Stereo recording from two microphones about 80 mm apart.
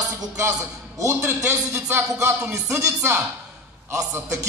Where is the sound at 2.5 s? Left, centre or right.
Right.